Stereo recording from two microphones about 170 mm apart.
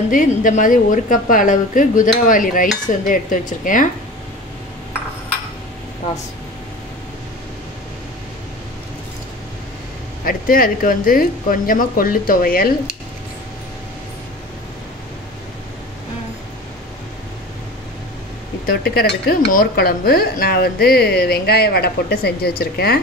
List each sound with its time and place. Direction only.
0.1 s a woman's voice: 50° left (ahead or behind)
10.2 s speech: 55° left (ahead or behind)
18.7 s speech: 65° left (ahead or behind)